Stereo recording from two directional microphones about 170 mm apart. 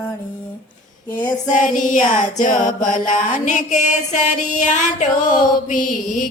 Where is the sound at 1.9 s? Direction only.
50° left (ahead or behind).